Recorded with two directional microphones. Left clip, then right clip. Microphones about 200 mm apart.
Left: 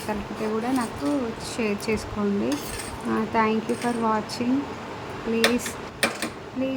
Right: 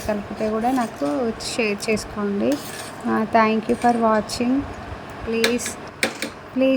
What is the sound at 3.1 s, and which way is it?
Speech, 25° right (ahead or behind).